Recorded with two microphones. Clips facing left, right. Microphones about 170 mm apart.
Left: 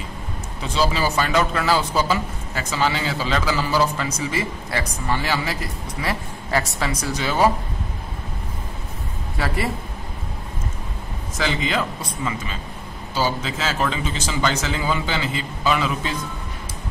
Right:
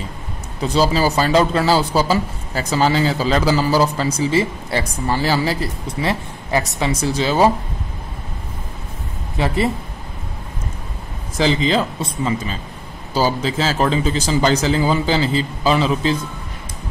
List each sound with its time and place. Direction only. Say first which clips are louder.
0.6 s a man's voice: right 5 dB; 35° right (ahead or behind)
9.4 s speech: right 5 dB; 20° right (ahead or behind)
11.3 s a man's voice: right 6 dB; 30° right (ahead or behind)